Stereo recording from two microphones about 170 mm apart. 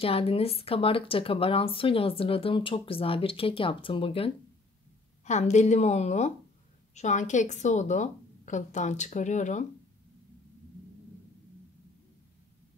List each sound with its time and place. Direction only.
0.0 s speech: 35° left (ahead or behind)
5.2 s a woman's voice: 45° left (ahead or behind)